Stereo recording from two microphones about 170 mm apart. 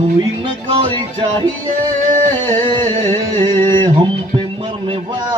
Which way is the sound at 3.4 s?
25° right (ahead or behind).